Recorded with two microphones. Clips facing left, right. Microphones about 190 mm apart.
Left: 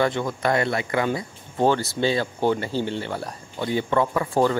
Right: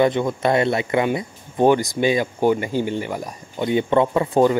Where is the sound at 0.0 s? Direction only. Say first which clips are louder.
Right 5 dB; 20° right (ahead or behind).